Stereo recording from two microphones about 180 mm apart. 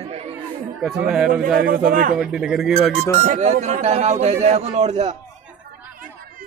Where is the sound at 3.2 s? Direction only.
40° right (ahead or behind).